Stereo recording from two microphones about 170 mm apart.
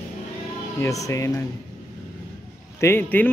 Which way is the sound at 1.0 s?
15° left (ahead or behind).